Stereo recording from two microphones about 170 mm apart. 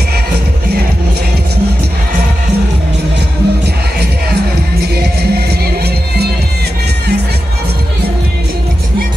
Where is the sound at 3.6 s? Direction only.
75° right (ahead or behind).